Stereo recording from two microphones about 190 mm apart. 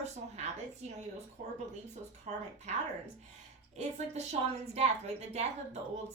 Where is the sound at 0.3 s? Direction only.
35° right (ahead or behind).